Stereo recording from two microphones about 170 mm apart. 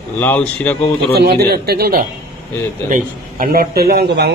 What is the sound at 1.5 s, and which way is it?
A man's voice, 65° right (ahead or behind).